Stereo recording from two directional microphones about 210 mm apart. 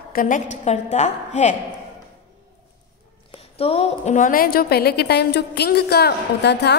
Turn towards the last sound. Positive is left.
turn(degrees=55)  # may be behind; listen again after turning